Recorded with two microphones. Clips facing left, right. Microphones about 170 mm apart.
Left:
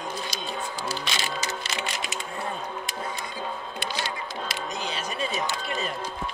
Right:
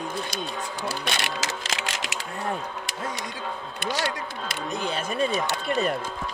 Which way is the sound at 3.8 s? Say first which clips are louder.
Right 6 dB; 55° right (ahead or behind).